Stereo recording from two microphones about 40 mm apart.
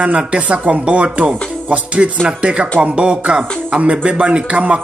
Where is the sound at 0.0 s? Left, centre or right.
Right.